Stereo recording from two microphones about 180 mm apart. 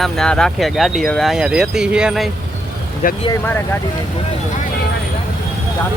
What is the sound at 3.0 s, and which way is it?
Speech, 45° left (ahead or behind).